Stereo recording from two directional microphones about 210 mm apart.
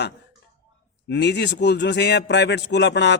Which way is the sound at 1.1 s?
55° left (ahead or behind).